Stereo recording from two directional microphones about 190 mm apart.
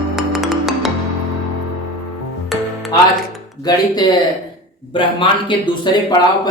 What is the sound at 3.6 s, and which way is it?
Speech, 20° left (ahead or behind).